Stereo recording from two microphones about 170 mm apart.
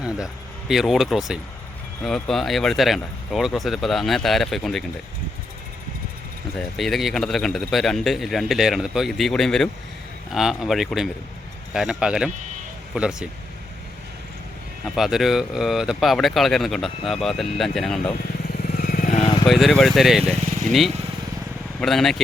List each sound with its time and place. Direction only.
0.7 s a man's voice: centre (ahead or behind)
6.6 s a man's voice: centre (ahead or behind)
14.9 s a man's voice: centre (ahead or behind)
18.5 s motorcycle: 65° left (ahead or behind)
19.5 s a man's voice: centre (ahead or behind)